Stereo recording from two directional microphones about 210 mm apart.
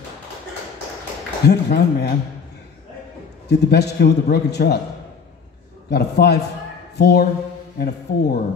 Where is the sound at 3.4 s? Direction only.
50° left (ahead or behind).